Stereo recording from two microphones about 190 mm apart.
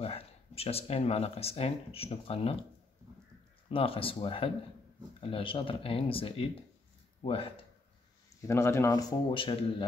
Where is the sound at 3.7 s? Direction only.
30° left (ahead or behind).